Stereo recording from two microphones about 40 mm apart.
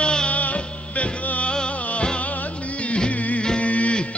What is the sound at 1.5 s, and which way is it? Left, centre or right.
Music, left.